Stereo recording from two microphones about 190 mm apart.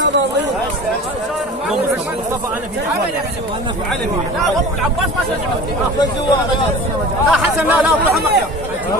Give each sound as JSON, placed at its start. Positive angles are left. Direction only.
{"t": 7.2, "sound": "speech", "side_deg": -5}